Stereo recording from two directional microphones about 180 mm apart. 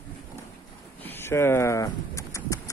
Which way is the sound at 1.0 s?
10° left (ahead or behind).